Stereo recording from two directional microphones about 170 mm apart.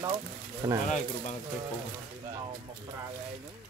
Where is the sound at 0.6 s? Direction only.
25° right (ahead or behind).